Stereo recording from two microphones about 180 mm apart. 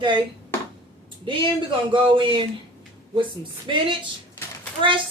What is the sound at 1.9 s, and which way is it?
Speech, 25° right (ahead or behind).